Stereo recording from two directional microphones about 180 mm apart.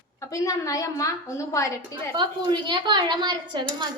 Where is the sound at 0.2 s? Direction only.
20° left (ahead or behind).